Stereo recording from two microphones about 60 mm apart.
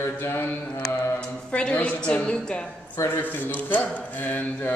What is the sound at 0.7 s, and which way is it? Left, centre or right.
Mantra, left.